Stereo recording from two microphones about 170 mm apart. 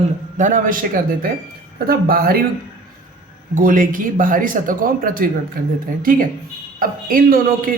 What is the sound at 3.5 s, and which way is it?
A man's voice, 55° right (ahead or behind).